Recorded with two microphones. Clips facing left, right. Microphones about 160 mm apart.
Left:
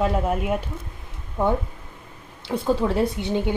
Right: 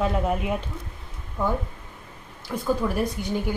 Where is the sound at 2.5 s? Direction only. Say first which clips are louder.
Left 3 dB; 25° left (ahead or behind).